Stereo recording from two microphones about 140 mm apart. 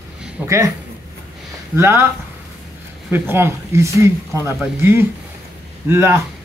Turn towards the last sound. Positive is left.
turn(degrees=-20)  # may be behind; listen again after turning